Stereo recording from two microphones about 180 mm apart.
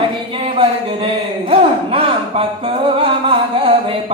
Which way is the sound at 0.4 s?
30° right (ahead or behind).